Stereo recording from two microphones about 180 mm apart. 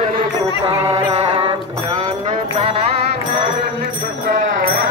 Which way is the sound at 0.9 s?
30° right (ahead or behind).